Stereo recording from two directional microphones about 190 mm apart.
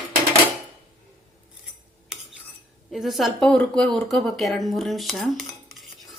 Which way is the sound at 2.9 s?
Centre (ahead or behind).